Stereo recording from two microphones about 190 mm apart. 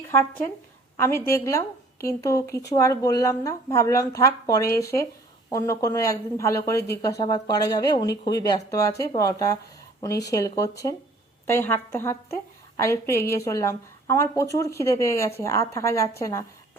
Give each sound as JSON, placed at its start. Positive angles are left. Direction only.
{"t": 0.1, "sound": "a woman's voice", "side_deg": 10}